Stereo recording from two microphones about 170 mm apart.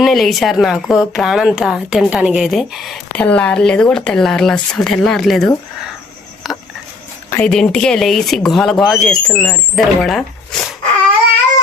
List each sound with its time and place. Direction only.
0.0 s speech: centre (ahead or behind)
6.4 s a sound: centre (ahead or behind)
7.3 s speech: 10° left (ahead or behind)